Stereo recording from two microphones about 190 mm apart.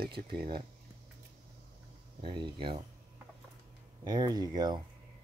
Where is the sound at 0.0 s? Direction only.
55° right (ahead or behind).